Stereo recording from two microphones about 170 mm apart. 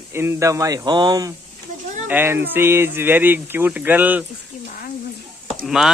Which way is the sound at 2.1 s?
10° right (ahead or behind).